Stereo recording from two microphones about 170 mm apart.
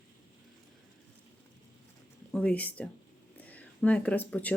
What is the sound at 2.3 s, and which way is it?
Speech, 5° left (ahead or behind).